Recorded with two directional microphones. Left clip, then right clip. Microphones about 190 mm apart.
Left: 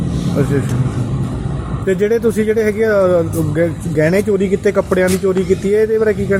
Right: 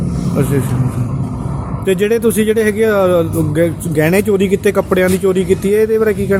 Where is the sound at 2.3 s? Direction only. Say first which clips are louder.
Right 1 dB; 25° right (ahead or behind).